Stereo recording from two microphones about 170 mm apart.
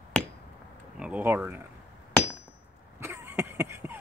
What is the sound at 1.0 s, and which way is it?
Speech, 10° right (ahead or behind).